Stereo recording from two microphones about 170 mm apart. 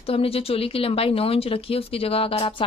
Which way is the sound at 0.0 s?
35° left (ahead or behind).